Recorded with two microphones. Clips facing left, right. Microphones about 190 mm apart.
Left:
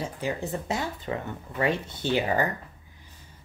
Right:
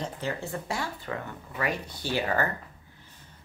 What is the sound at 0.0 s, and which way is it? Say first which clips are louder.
Speech: left 2 dB; 15° left (ahead or behind).